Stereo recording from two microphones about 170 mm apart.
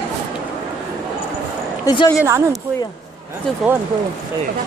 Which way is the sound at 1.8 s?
25° left (ahead or behind).